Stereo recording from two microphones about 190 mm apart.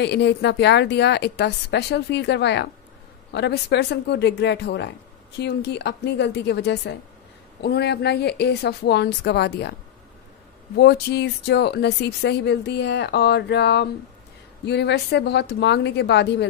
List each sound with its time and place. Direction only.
0.0 s speech: 65° left (ahead or behind)
10.8 s speech: 60° left (ahead or behind)